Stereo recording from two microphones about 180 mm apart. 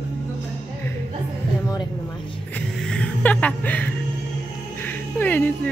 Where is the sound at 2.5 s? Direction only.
5° left (ahead or behind).